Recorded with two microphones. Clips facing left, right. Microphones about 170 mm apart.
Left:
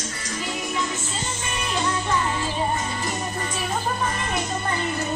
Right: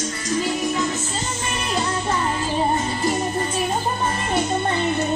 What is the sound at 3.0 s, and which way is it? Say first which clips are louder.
Music: right 6 dB; 30° right (ahead or behind).